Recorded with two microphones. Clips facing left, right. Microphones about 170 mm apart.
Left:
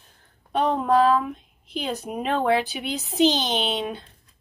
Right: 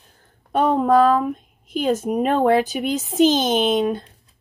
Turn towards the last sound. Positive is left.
turn(degrees=-45)  # may be behind; listen again after turning